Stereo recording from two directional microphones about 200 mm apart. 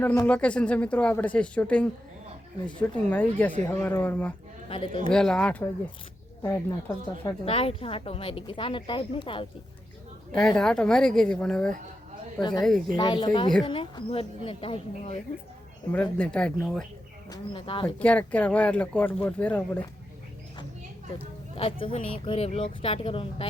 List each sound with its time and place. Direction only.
0.0 s speech: 10° left (ahead or behind)
7.4 s speech: 30° left (ahead or behind)
10.4 s speech: 5° left (ahead or behind)
12.4 s speech: 20° left (ahead or behind)
15.9 s speech: 5° left (ahead or behind)
17.2 s speech: 20° left (ahead or behind)
18.0 s speech: 5° left (ahead or behind)
21.5 s speech: 25° left (ahead or behind)